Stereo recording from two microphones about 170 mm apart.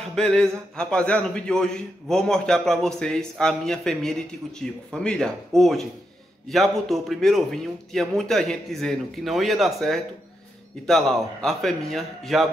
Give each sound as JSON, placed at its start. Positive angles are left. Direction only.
{"t": 0.1, "sound": "a man's voice", "side_deg": 5}